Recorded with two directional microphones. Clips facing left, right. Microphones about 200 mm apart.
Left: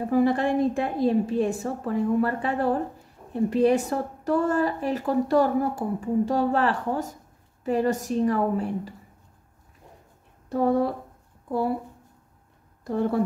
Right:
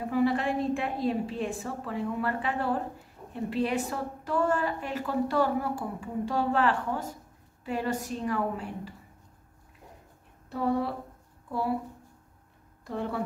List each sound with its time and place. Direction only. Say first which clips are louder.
0.1 s a woman's voice: left 5 dB; 40° left (ahead or behind)
10.5 s a woman's voice: left 6 dB; 45° left (ahead or behind)
12.8 s a woman's voice: left 8 dB; 40° left (ahead or behind)